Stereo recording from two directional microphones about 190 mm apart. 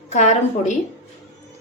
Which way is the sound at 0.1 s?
35° left (ahead or behind).